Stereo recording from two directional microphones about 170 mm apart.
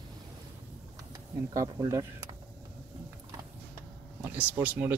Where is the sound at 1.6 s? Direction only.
15° right (ahead or behind).